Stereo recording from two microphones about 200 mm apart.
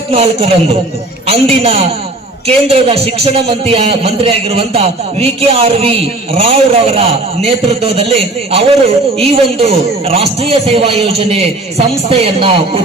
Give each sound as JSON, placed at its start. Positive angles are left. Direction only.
{"t": 0.1, "sound": "a man's voice", "side_deg": -30}